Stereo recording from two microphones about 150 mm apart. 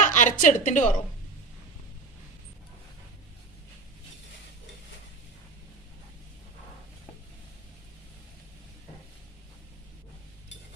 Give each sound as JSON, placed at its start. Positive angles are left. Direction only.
{"t": 0.0, "sound": "a woman's voice", "side_deg": 55}